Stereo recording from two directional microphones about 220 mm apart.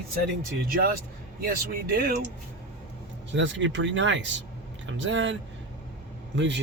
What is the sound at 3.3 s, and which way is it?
Speech, 55° right (ahead or behind).